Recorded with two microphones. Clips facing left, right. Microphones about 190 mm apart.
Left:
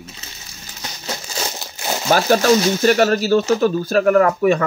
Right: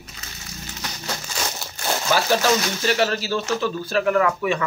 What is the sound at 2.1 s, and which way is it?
Speech, 45° left (ahead or behind).